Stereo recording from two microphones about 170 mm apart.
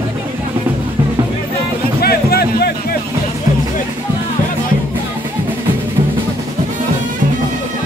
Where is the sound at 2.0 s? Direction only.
65° left (ahead or behind).